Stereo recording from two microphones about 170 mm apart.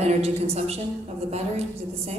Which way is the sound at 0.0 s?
40° right (ahead or behind).